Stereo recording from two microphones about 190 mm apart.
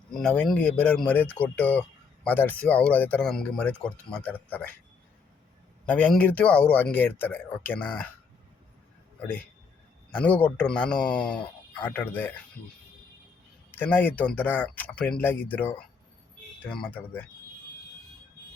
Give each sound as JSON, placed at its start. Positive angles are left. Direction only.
{"t": 0.1, "sound": "speech", "side_deg": 5}
{"t": 5.8, "sound": "speech", "side_deg": 5}
{"t": 10.2, "sound": "speech", "side_deg": 10}
{"t": 13.7, "sound": "speech", "side_deg": 10}